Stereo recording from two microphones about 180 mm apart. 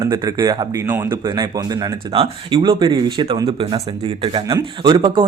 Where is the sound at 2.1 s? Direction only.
30° right (ahead or behind).